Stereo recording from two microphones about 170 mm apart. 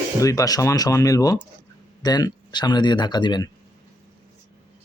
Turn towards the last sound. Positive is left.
turn(degrees=25)  # may be behind; listen again after turning